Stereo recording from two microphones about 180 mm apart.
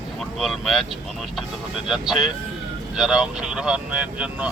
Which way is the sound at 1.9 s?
Centre (ahead or behind).